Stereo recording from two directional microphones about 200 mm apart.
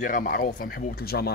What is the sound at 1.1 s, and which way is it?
Speech, 60° left (ahead or behind).